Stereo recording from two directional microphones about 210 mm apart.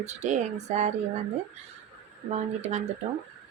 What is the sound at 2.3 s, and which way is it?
Speech, 30° right (ahead or behind).